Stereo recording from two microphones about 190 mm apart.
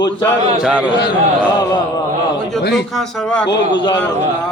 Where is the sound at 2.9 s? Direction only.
Centre (ahead or behind).